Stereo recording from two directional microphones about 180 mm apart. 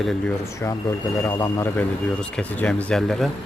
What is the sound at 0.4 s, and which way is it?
Speech, 15° left (ahead or behind).